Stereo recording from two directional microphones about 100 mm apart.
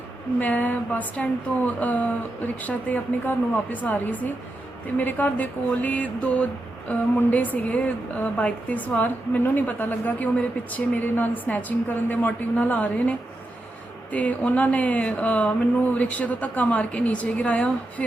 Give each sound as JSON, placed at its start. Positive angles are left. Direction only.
{"t": 0.3, "sound": "a woman's voice", "side_deg": 15}